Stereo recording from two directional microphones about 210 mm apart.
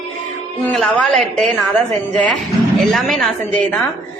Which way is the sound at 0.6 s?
5° left (ahead or behind).